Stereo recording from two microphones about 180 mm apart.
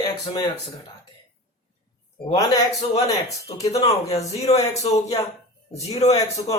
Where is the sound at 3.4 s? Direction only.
35° left (ahead or behind).